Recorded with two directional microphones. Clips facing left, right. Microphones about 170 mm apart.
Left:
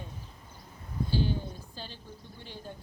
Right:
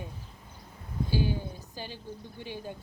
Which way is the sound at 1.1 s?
10° right (ahead or behind).